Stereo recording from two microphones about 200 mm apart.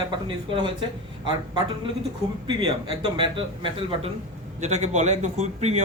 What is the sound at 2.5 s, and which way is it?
Speech, 25° right (ahead or behind).